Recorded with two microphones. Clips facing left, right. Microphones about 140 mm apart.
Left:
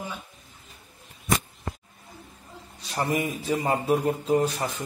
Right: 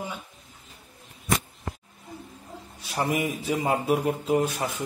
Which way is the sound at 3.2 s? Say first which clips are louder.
Even; 10° right (ahead or behind).